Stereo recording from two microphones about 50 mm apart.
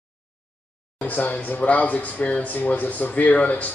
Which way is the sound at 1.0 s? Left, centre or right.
Left.